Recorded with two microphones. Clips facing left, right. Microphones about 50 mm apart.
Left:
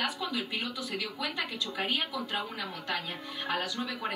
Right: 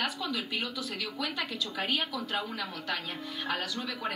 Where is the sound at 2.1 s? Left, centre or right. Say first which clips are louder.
Right 1 dB; centre.